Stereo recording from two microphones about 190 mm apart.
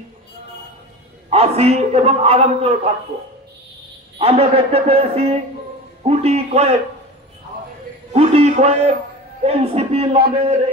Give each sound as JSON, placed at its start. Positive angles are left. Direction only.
{"t": 1.3, "sound": "a man's voice", "side_deg": -30}
{"t": 4.2, "sound": "a man's voice", "side_deg": -30}
{"t": 8.1, "sound": "a man's voice", "side_deg": -30}